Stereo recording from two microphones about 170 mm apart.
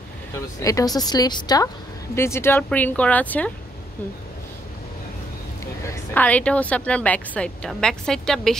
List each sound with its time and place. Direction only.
0.6 s a woman's voice: 20° left (ahead or behind)
5.9 s a woman's voice: 10° left (ahead or behind)